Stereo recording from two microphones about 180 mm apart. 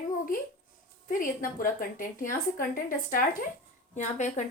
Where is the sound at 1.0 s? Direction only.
50° left (ahead or behind).